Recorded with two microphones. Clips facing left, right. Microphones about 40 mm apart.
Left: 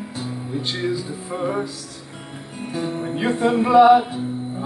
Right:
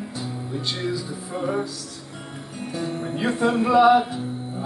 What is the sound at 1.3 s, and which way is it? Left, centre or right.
Speech, centre.